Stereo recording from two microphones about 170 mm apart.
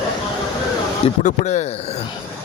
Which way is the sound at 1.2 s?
45° left (ahead or behind).